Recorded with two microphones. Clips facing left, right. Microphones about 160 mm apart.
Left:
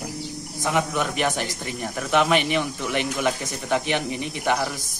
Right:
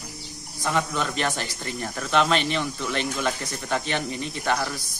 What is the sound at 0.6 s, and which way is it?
Speech, 15° left (ahead or behind).